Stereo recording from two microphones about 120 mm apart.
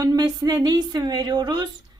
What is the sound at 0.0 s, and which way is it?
Speech, 30° right (ahead or behind).